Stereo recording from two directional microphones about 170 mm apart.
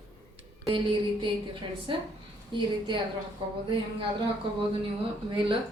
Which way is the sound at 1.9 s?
30° right (ahead or behind).